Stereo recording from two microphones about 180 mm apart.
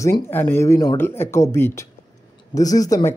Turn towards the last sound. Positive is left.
turn(degrees=20)  # may be behind; listen again after turning